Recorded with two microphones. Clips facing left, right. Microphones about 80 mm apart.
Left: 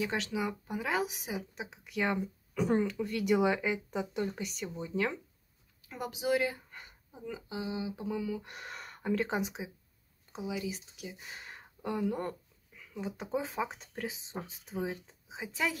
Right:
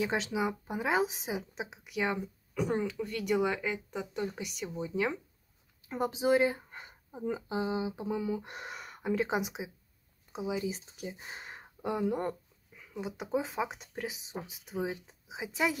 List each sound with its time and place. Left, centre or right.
0.0 s a woman's voice: right
1.9 s speech: centre
5.9 s speech: right
7.1 s a woman's voice: right
8.7 s speech: centre
10.4 s speech: right